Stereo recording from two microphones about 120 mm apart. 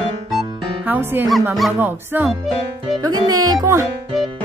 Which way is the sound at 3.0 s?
30° right (ahead or behind).